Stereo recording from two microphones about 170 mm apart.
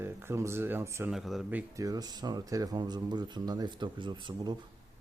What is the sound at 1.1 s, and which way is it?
Speech, centre (ahead or behind).